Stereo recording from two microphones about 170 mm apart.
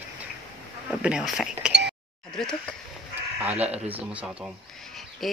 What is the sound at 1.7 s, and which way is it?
Chink, 80° right.